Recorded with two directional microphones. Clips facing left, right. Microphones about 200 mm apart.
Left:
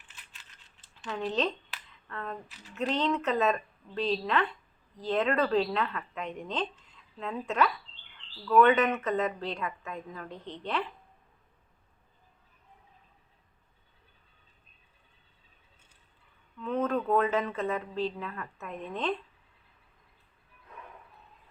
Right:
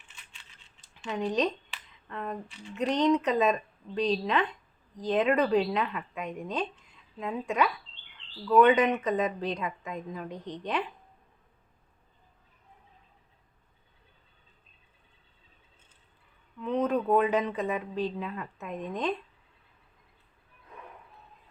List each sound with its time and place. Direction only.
0.1 s coin: centre (ahead or behind)
0.8 s a sound: 15° right (ahead or behind)
2.5 s speech: 5° left (ahead or behind)
2.7 s speech: 15° right (ahead or behind)
16.6 s speech: 20° right (ahead or behind)